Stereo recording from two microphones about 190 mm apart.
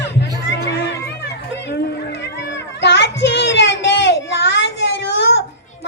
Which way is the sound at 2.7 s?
65° left (ahead or behind).